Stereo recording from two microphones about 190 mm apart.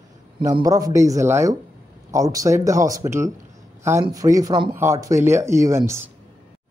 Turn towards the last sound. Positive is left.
turn(degrees=-15)  # may be behind; listen again after turning